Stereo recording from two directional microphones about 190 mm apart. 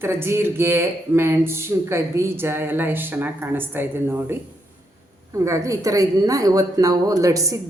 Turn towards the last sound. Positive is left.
turn(degrees=-15)  # may be behind; listen again after turning